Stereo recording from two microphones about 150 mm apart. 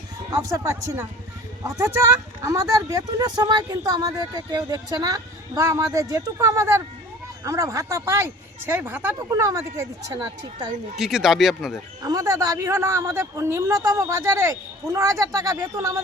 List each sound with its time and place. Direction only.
0.3 s speech: 20° right (ahead or behind)
10.9 s speech: 5° right (ahead or behind)
12.0 s speech: 25° right (ahead or behind)